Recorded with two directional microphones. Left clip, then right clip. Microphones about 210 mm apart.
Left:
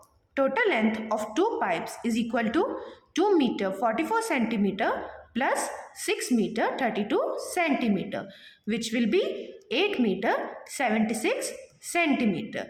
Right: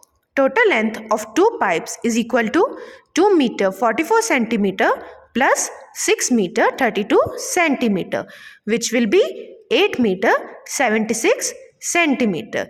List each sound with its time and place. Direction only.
0.3 s a woman's voice: 45° right (ahead or behind)